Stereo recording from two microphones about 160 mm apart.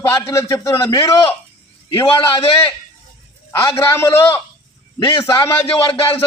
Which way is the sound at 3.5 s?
15° left (ahead or behind).